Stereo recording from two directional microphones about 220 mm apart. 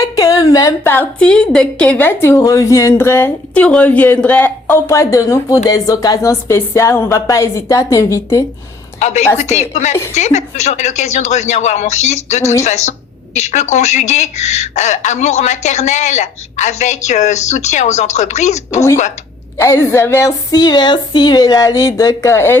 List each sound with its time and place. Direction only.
0.0 s a woman's voice: 15° left (ahead or behind)
9.0 s a woman's voice: 30° left (ahead or behind)
19.5 s a woman's voice: 10° left (ahead or behind)